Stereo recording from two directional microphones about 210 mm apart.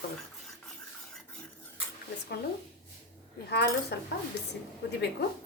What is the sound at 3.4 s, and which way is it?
Speech, 50° left (ahead or behind).